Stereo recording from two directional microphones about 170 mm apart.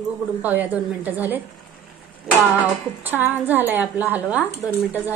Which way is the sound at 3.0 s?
10° right (ahead or behind).